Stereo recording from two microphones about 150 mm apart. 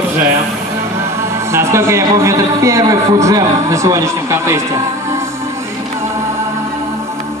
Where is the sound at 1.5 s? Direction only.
20° right (ahead or behind).